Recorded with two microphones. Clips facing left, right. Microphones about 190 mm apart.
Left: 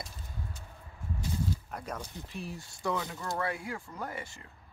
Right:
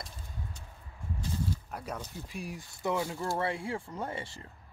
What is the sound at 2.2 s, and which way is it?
Speech, 10° right (ahead or behind).